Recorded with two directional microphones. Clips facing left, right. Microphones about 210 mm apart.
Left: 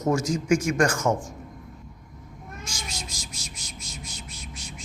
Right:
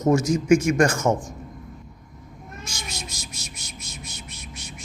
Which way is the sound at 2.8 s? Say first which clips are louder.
Right 2 dB; 20° right (ahead or behind).